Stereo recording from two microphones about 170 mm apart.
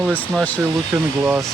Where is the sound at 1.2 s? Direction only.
15° right (ahead or behind).